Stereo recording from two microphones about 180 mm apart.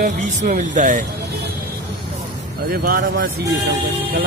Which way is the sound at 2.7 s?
50° right (ahead or behind).